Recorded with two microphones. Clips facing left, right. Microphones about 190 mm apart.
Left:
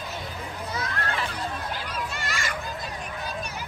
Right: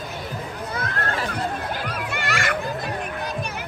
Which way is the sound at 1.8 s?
60° right (ahead or behind).